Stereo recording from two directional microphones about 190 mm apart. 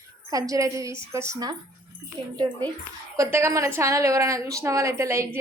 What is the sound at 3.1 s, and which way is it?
A woman's voice, 15° right (ahead or behind).